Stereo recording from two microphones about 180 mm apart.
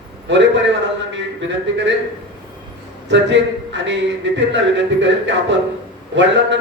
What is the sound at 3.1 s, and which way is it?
A man's voice, 80° right.